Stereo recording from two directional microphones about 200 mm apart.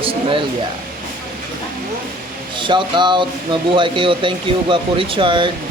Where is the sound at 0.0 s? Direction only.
25° right (ahead or behind).